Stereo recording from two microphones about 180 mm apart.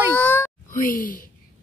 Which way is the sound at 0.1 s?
10° left (ahead or behind).